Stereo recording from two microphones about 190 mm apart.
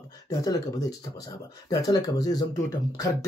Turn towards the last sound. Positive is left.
turn(degrees=20)  # may be behind; listen again after turning